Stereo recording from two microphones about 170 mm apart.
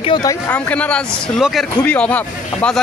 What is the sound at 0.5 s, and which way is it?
A man's voice, 10° left (ahead or behind).